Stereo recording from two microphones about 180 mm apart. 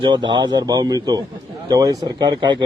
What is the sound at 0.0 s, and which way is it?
A man's voice, 25° right (ahead or behind).